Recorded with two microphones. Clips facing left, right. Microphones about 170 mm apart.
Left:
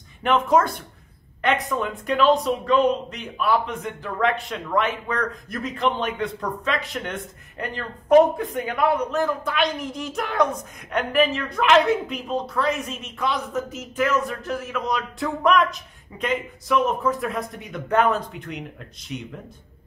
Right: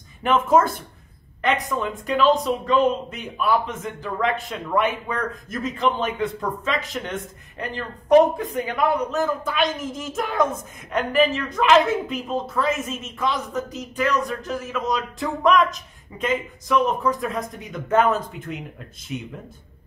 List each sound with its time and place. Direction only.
0.2 s a man's voice: centre (ahead or behind)